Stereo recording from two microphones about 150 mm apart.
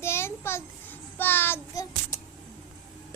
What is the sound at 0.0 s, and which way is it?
Child singing, 15° left (ahead or behind).